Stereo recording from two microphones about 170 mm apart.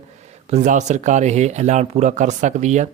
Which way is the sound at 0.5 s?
45° right (ahead or behind).